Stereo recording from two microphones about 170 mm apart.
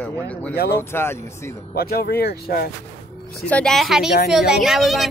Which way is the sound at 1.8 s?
65° left (ahead or behind).